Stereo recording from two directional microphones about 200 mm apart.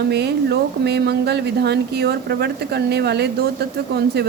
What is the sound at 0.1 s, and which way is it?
A woman's voice, 55° right (ahead or behind).